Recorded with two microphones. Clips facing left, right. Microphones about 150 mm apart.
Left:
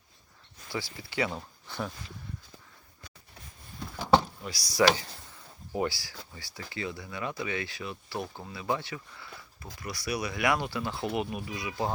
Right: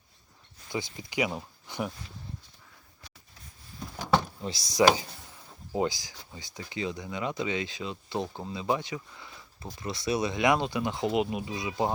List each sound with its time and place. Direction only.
0.7 s speech: 20° right (ahead or behind)
4.4 s speech: 25° right (ahead or behind)